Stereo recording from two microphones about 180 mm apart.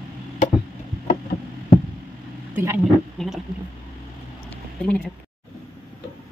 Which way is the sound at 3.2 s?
Centre (ahead or behind).